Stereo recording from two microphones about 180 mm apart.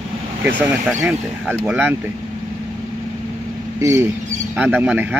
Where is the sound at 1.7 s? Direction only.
10° right (ahead or behind).